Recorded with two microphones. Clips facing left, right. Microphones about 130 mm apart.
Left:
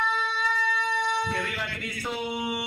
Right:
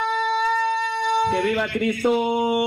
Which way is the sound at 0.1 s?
55° right (ahead or behind).